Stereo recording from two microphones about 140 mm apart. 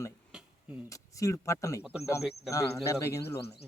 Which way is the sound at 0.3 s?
5° right (ahead or behind).